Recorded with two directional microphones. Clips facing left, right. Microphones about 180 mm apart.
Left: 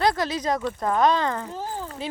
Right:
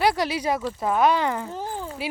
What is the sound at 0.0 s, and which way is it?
Speech, 10° right (ahead or behind).